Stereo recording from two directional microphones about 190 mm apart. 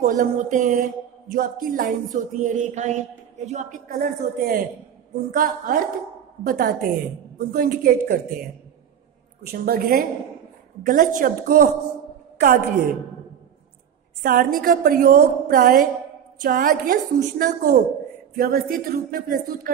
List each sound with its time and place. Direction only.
0.0 s a man's voice: 40° right (ahead or behind)
3.9 s a woman's voice: 50° right (ahead or behind)
9.5 s a woman's voice: 50° right (ahead or behind)
14.2 s a woman's voice: 50° right (ahead or behind)